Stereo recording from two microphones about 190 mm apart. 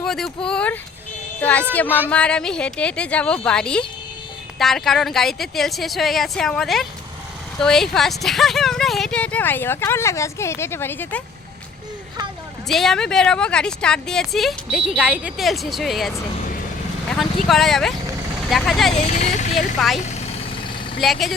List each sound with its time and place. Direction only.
0.0 s a sound: centre (ahead or behind)
0.4 s a woman's voice: 5° left (ahead or behind)
12.6 s a woman's voice: centre (ahead or behind)
17.2 s a woman's voice: centre (ahead or behind)
18.9 s speech: 35° left (ahead or behind)
20.1 s vehicle: 35° left (ahead or behind)
21.0 s a woman's voice: centre (ahead or behind)